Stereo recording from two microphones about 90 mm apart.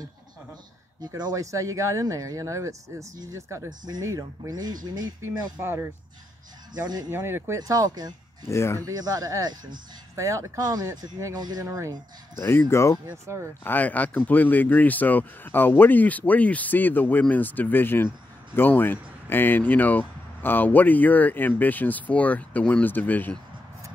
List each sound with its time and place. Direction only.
1.0 s speech: 50° right (ahead or behind)
5.6 s speech: 25° right (ahead or behind)
6.7 s speech: 50° right (ahead or behind)
7.1 s speech: 25° right (ahead or behind); by 8.1 s 45° right (ahead or behind)
8.5 s speech: 30° left (ahead or behind)
8.8 s speech: 45° right (ahead or behind)
10.6 s speech: 45° right (ahead or behind)
11.6 s speech: 35° right (ahead or behind)
12.4 s speech: 25° left (ahead or behind)
13.3 s speech: 30° right (ahead or behind)
13.7 s speech: 20° left (ahead or behind)